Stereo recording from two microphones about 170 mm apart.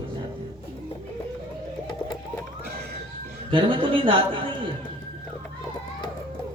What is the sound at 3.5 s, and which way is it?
Speech, 30° right (ahead or behind).